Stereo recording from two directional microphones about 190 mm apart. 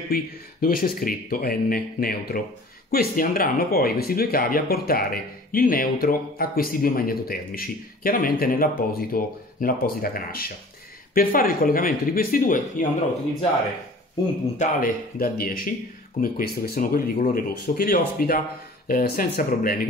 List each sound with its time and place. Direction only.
0.1 s speech: 50° left (ahead or behind)
14.6 s speech: 50° left (ahead or behind)